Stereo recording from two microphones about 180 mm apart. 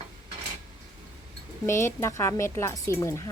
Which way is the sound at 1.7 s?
15° left (ahead or behind).